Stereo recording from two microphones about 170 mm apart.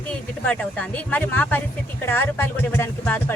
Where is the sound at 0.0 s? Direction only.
10° left (ahead or behind).